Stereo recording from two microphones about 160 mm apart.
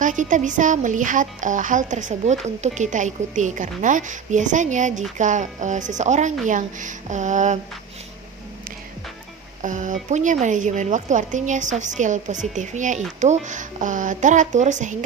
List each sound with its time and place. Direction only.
0.0 s speech: 55° right (ahead or behind)
9.6 s speech: 50° right (ahead or behind)